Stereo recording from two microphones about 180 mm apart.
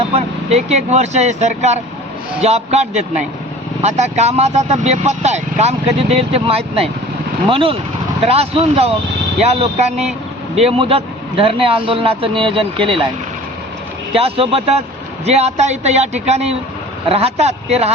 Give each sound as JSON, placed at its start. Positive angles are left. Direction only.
{"t": 0.2, "sound": "speech", "side_deg": -35}
{"t": 14.1, "sound": "speech", "side_deg": -30}